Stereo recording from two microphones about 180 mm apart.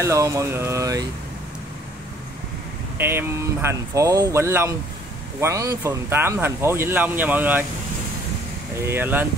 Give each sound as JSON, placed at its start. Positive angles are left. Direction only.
{"t": 0.0, "sound": "speech", "side_deg": -15}
{"t": 3.0, "sound": "speech", "side_deg": -15}
{"t": 8.7, "sound": "speech", "side_deg": -15}